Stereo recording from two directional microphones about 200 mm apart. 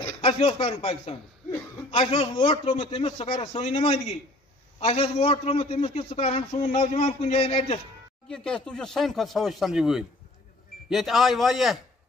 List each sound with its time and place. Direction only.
0.2 s a man's voice: 25° left (ahead or behind)
8.3 s speech: 5° left (ahead or behind)